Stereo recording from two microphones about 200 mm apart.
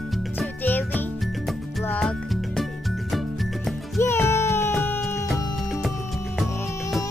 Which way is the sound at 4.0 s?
15° left (ahead or behind).